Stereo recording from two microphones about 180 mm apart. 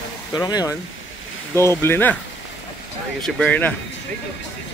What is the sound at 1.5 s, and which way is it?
Speech, 15° left (ahead or behind).